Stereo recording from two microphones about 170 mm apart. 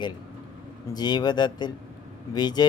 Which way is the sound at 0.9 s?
25° left (ahead or behind).